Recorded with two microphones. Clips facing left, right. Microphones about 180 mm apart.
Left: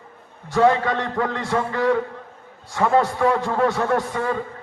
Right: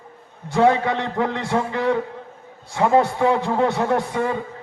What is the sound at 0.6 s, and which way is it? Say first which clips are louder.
A man's voice: right 1 dB; 20° right (ahead or behind).